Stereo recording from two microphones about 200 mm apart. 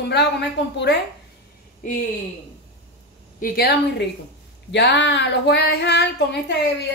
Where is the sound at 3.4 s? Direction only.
45° left (ahead or behind).